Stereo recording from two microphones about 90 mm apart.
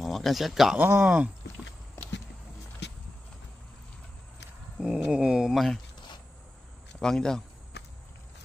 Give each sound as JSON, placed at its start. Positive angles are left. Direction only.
{"t": 0.0, "sound": "speech", "side_deg": 0}
{"t": 0.7, "sound": "speech", "side_deg": -20}
{"t": 4.7, "sound": "speech", "side_deg": -10}
{"t": 7.0, "sound": "speech", "side_deg": 5}